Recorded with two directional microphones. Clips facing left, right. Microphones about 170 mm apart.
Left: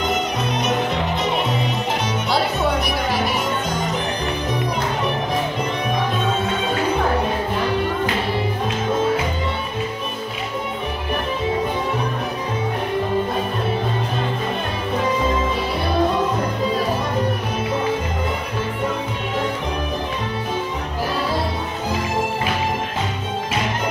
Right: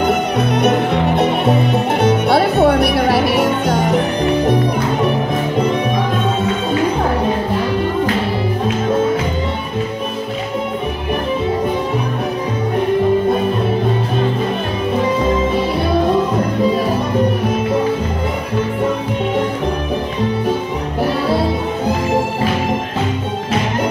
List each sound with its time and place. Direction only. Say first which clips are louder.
0.0 s music: right 6 dB; 60° right (ahead or behind)